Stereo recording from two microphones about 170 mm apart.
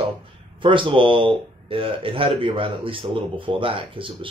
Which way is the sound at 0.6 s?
30° right (ahead or behind).